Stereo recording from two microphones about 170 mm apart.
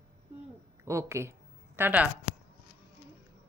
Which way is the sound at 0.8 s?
15° right (ahead or behind).